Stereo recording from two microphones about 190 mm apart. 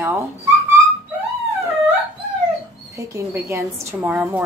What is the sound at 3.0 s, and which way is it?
A woman's voice, 15° right (ahead or behind).